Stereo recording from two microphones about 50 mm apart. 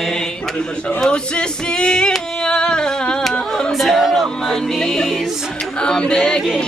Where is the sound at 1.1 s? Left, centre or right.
Centre.